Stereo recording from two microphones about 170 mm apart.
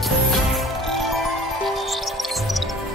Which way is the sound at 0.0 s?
Centre (ahead or behind).